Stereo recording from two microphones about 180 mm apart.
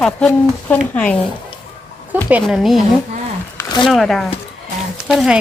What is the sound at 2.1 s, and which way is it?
Speech, 10° right (ahead or behind).